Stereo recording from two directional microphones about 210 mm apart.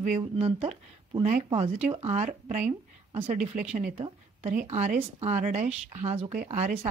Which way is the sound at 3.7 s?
30° right (ahead or behind).